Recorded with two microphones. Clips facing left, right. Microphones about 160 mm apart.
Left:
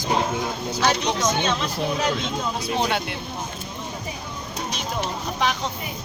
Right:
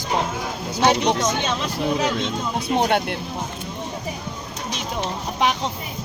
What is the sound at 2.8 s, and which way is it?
Speech, 55° right (ahead or behind).